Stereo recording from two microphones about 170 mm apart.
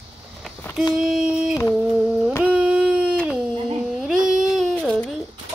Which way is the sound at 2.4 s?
5° right (ahead or behind).